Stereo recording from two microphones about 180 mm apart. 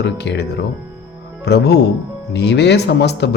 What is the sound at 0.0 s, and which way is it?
A man's voice, 70° left (ahead or behind).